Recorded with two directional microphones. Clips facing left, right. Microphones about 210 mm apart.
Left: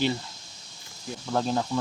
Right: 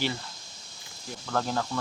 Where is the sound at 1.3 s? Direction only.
15° left (ahead or behind).